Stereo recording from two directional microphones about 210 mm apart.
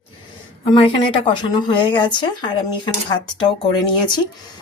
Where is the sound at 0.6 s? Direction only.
25° left (ahead or behind).